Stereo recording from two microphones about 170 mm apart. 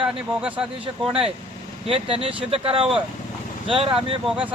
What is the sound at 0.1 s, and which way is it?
Speech, 5° right (ahead or behind).